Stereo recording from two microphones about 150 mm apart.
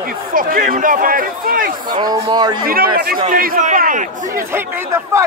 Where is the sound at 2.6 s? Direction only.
75° right (ahead or behind).